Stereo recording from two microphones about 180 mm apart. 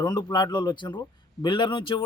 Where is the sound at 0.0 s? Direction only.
20° left (ahead or behind).